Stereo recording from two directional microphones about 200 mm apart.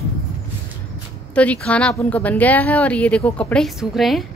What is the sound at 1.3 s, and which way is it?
A woman's voice, 5° left (ahead or behind).